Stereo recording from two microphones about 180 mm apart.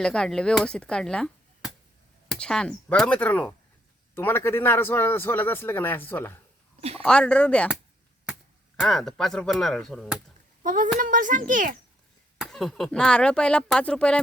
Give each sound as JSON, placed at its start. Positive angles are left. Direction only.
{"t": 0.0, "sound": "a man's voice", "side_deg": 5}
{"t": 8.7, "sound": "speech", "side_deg": 5}
{"t": 10.6, "sound": "a child's voice", "side_deg": -45}
{"t": 12.4, "sound": "speech", "side_deg": 0}